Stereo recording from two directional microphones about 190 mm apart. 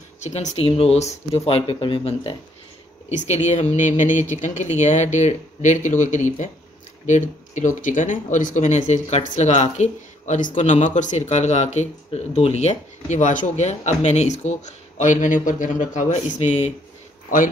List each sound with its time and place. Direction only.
0.2 s speech: 35° left (ahead or behind)